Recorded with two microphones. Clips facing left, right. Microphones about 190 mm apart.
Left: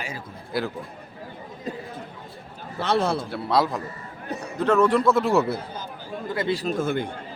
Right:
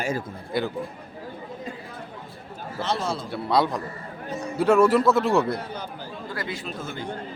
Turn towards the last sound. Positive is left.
turn(degrees=50)  # may be behind; listen again after turning